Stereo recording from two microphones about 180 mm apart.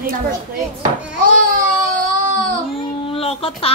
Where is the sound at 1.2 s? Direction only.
50° right (ahead or behind).